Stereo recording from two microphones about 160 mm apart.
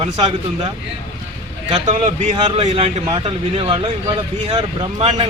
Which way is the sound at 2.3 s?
30° right (ahead or behind).